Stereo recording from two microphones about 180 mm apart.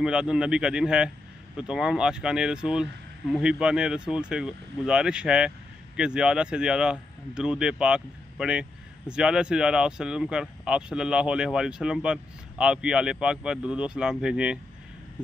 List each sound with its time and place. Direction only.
0.0 s speech: 5° right (ahead or behind)